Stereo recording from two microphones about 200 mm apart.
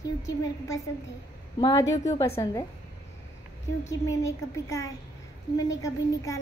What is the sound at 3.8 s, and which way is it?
A child's voice, 15° left (ahead or behind).